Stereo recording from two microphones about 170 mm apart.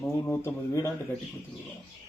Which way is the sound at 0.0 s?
15° left (ahead or behind).